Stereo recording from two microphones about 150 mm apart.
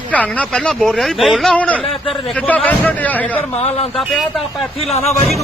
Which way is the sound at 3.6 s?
45° left (ahead or behind).